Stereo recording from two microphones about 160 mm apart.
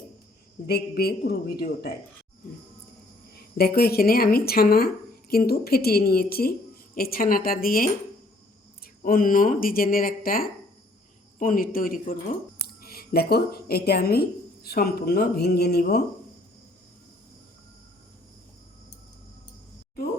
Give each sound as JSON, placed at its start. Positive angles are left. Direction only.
{"t": 0.7, "sound": "speech", "side_deg": 75}
{"t": 3.3, "sound": "speech", "side_deg": 75}
{"t": 9.0, "sound": "speech", "side_deg": 60}
{"t": 12.5, "sound": "speech", "side_deg": 75}